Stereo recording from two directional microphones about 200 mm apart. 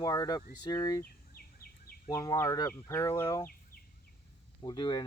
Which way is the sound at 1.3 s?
45° left (ahead or behind).